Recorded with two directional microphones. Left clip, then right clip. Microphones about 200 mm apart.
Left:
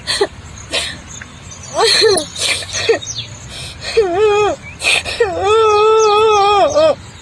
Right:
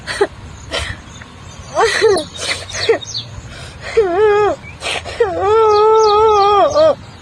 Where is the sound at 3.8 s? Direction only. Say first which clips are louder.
Even; centre (ahead or behind).